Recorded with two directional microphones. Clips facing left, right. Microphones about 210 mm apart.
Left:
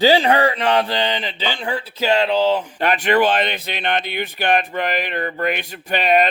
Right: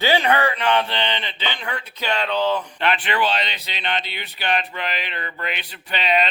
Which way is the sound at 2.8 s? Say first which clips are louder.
Left 5 dB; 45° left (ahead or behind).